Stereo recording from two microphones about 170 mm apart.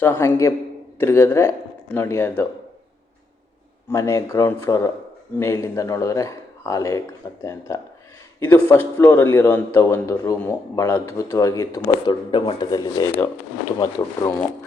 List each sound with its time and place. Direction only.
0.0 s a man's voice: 15° left (ahead or behind)
3.8 s a man's voice: 15° left (ahead or behind)